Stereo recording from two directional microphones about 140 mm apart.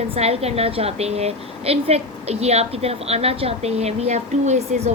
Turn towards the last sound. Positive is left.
turn(degrees=-55)  # may be behind; listen again after turning